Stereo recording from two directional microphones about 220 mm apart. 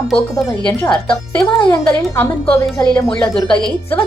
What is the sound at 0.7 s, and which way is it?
Speech, 20° left (ahead or behind).